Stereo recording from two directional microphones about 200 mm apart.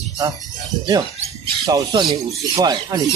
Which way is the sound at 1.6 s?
20° right (ahead or behind).